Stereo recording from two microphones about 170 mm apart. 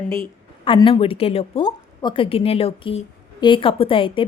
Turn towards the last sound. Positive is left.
turn(degrees=30)  # may be behind; listen again after turning